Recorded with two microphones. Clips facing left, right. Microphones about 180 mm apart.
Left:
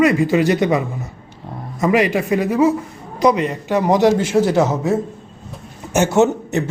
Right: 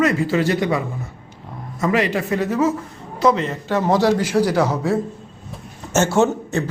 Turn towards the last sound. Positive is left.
turn(degrees=20)  # may be behind; listen again after turning